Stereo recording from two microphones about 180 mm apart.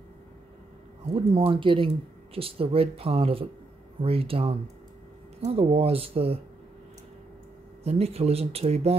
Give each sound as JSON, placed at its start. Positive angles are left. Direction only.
{"t": 1.1, "sound": "speech", "side_deg": -30}
{"t": 7.8, "sound": "speech", "side_deg": -35}